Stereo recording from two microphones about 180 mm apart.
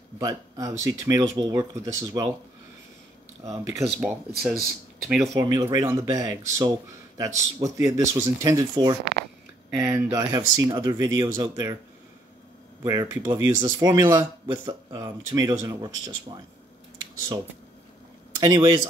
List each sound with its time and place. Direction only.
0.2 s speech: 20° right (ahead or behind)
3.4 s speech: 15° right (ahead or behind)
4.0 s speech: 5° right (ahead or behind)
5.0 s speech: 15° right (ahead or behind)
12.8 s speech: 20° right (ahead or behind)
18.4 s speech: 25° right (ahead or behind)